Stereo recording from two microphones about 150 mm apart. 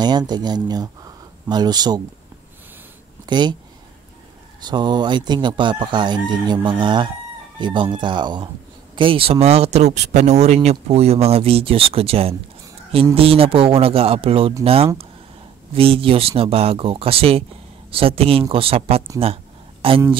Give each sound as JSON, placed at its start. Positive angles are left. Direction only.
{"t": 0.3, "sound": "speech", "side_deg": -30}
{"t": 3.3, "sound": "speech", "side_deg": -30}
{"t": 4.6, "sound": "speech", "side_deg": -30}
{"t": 19.1, "sound": "a sound", "side_deg": -40}